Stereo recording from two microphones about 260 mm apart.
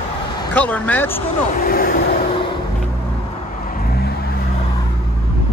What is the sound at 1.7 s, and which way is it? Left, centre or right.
Speech, left.